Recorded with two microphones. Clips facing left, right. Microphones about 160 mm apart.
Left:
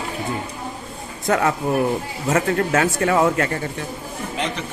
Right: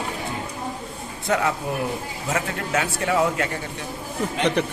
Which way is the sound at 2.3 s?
45° left (ahead or behind).